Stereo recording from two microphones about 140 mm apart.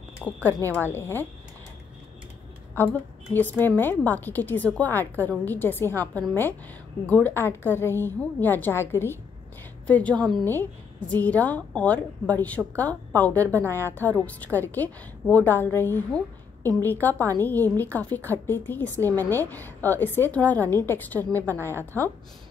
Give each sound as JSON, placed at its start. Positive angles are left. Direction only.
{"t": 0.2, "sound": "a woman's voice", "side_deg": 10}
{"t": 2.7, "sound": "a woman's voice", "side_deg": 15}